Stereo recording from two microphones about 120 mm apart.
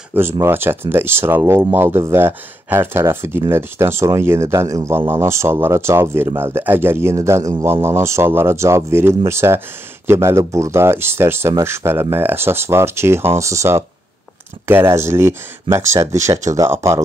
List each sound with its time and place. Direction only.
0.1 s speech: 20° right (ahead or behind)